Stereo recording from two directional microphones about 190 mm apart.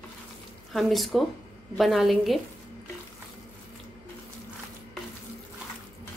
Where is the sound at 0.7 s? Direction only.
Centre (ahead or behind).